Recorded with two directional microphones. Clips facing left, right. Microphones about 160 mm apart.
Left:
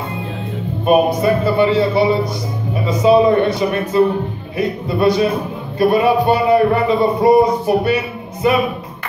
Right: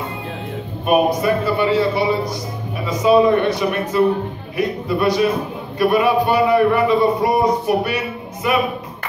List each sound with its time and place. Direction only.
0.8 s a man's voice: 25° left (ahead or behind)